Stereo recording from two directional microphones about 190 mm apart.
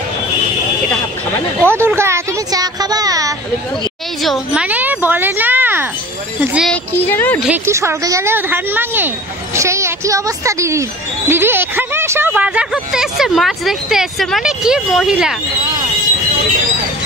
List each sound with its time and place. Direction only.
1.6 s a woman's voice: 10° right (ahead or behind)
4.2 s a woman's voice: centre (ahead or behind)
6.7 s a woman's voice: 10° left (ahead or behind)
7.4 s a woman's voice: 10° right (ahead or behind)